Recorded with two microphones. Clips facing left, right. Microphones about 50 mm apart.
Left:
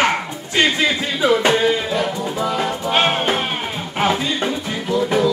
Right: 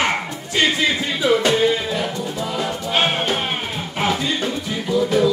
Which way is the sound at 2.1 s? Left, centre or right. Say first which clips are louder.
Left 3 dB; left.